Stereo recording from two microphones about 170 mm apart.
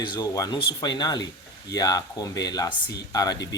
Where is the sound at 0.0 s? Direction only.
25° left (ahead or behind).